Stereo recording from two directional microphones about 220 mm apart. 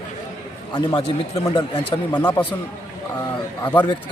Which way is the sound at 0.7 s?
25° left (ahead or behind).